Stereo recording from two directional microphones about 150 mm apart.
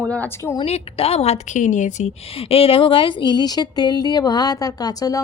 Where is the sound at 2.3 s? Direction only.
40° left (ahead or behind).